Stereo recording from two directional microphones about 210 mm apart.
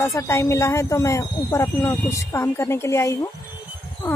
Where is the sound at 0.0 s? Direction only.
15° left (ahead or behind).